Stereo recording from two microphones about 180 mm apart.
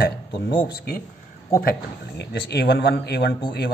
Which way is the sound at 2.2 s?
65° left (ahead or behind).